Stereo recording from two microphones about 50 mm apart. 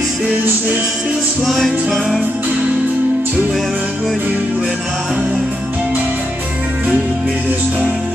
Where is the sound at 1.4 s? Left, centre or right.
Centre.